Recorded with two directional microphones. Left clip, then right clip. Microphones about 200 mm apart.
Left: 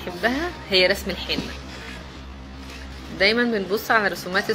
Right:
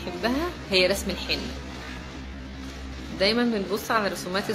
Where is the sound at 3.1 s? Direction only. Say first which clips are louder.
Left 4 dB; 5° left (ahead or behind).